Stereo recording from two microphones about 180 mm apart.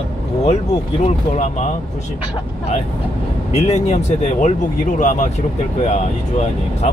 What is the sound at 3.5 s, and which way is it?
Speech, 35° left (ahead or behind).